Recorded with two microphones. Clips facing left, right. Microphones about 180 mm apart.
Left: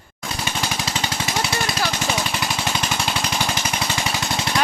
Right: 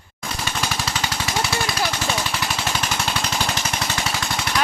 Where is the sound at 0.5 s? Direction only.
15° left (ahead or behind).